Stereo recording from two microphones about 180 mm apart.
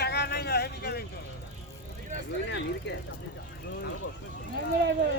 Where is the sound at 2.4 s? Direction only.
85° left.